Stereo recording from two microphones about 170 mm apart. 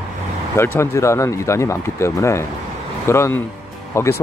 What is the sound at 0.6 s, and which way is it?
Speech, 15° left (ahead or behind).